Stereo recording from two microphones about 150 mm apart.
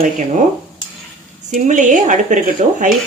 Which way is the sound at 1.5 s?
60° right (ahead or behind).